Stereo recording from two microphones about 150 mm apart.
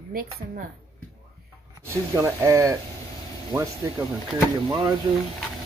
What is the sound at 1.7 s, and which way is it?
Speech, 20° right (ahead or behind).